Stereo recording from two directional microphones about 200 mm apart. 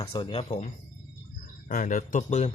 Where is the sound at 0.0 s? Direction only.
25° left (ahead or behind).